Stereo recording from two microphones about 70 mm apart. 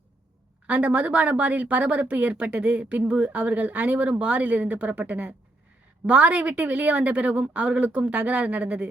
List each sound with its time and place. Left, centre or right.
0.7 s speech: right